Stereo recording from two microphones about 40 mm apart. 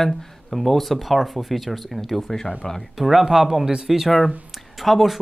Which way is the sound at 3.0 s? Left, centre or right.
Centre.